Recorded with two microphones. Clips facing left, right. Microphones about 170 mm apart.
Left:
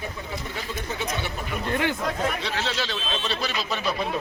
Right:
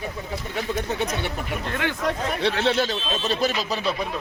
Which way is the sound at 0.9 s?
65° right (ahead or behind).